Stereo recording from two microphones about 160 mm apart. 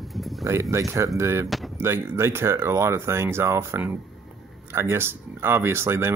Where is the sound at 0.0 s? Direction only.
Centre (ahead or behind).